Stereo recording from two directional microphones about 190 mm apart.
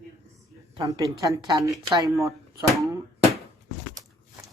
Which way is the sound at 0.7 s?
20° right (ahead or behind).